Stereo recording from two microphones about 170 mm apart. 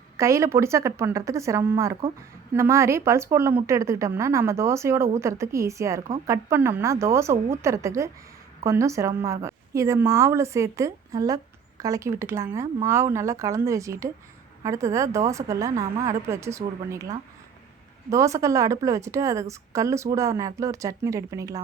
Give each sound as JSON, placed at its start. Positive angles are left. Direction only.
{"t": 0.2, "sound": "a woman's voice", "side_deg": -15}